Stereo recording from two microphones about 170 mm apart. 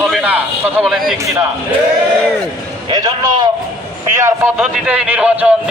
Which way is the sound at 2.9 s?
25° right (ahead or behind).